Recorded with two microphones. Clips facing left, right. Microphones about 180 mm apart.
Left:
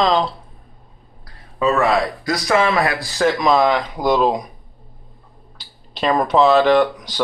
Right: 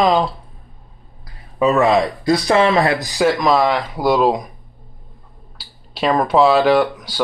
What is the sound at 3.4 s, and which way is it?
Speech, centre (ahead or behind).